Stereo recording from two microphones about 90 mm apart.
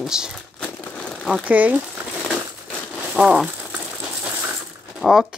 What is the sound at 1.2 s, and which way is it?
Speech, 15° right (ahead or behind).